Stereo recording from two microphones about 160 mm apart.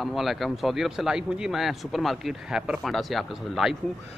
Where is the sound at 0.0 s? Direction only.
Centre (ahead or behind).